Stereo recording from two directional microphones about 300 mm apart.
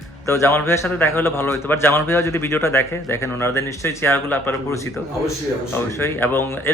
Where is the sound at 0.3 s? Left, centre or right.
Centre.